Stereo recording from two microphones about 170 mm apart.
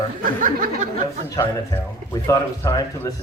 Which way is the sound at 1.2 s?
20° left (ahead or behind).